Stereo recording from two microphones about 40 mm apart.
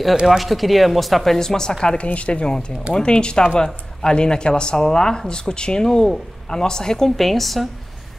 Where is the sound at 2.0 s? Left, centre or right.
Left; by 7.1 s centre.